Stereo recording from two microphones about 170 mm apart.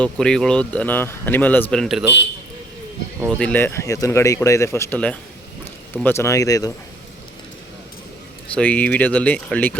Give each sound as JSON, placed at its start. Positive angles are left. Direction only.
{"t": 0.0, "sound": "speech", "side_deg": 5}
{"t": 3.2, "sound": "speech", "side_deg": 5}
{"t": 8.5, "sound": "speech", "side_deg": 10}